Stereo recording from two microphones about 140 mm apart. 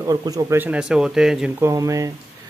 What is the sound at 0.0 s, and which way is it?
Speech, 25° right (ahead or behind).